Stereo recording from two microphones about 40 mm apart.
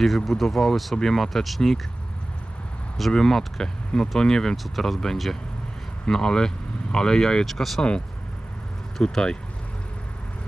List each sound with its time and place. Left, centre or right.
0.0 s speech: centre
3.1 s speech: centre
4.6 s speech: centre
6.0 s speech: centre
7.4 s speech: centre
9.0 s speech: centre